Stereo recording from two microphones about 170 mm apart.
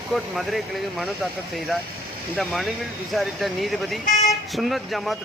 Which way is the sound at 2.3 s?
Centre (ahead or behind).